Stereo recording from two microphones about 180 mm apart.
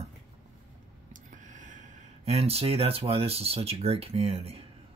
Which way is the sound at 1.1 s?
45° right (ahead or behind).